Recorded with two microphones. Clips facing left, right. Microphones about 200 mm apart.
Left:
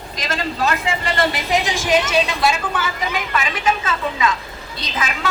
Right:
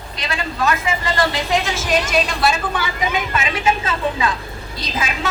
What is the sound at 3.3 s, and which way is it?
A woman's voice, 30° right (ahead or behind).